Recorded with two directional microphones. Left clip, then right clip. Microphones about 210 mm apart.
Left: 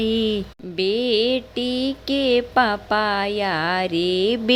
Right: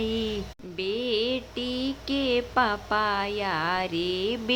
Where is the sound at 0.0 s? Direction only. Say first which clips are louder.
Left 7 dB; 25° left (ahead or behind).